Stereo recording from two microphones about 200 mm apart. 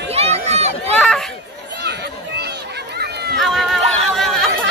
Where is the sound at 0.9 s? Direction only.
5° left (ahead or behind).